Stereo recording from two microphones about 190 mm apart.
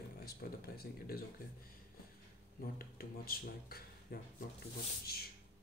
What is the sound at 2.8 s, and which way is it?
Speech, 50° left (ahead or behind).